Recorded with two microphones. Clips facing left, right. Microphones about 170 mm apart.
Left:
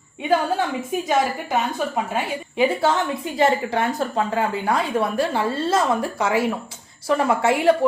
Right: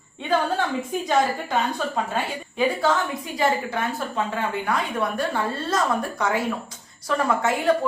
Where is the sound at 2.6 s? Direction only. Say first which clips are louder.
Left 2 dB; 25° left (ahead or behind).